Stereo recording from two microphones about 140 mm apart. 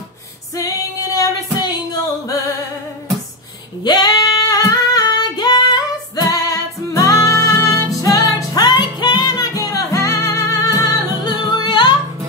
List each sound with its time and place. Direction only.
1.1 s female singing: 25° left (ahead or behind)
3.8 s female singing: 30° left (ahead or behind)
8.0 s music: 25° left (ahead or behind)